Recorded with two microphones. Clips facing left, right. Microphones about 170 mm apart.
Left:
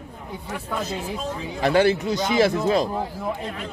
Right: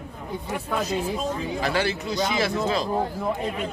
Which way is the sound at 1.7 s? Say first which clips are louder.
Left 9 dB; 50° left (ahead or behind).